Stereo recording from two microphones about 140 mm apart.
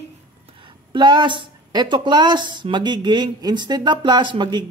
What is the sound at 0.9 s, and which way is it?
Speech, 30° right (ahead or behind).